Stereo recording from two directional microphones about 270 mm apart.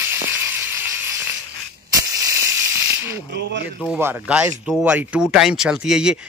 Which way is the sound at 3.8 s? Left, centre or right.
Centre.